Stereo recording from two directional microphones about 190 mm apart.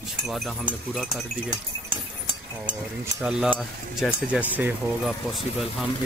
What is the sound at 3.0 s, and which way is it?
Speech, 15° right (ahead or behind).